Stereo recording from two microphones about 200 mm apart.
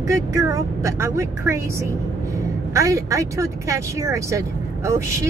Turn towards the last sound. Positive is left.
turn(degrees=-15)  # may be behind; listen again after turning